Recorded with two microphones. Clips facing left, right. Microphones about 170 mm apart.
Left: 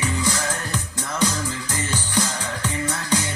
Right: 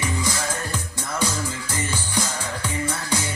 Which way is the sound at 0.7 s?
15° left (ahead or behind).